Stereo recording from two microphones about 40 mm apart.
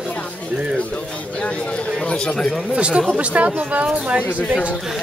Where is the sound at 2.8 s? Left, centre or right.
Right.